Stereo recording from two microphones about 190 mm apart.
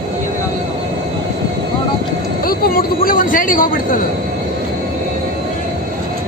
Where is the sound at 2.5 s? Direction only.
50° left (ahead or behind).